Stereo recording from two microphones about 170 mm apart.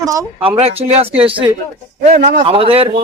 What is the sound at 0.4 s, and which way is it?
Speech, 35° right (ahead or behind).